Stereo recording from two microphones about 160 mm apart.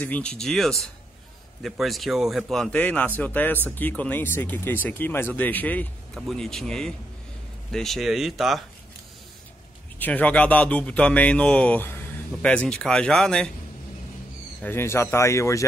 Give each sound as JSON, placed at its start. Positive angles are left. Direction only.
{"t": 0.0, "sound": "a man's voice", "side_deg": 10}
{"t": 9.9, "sound": "a man's voice", "side_deg": 10}
{"t": 14.6, "sound": "a man's voice", "side_deg": 15}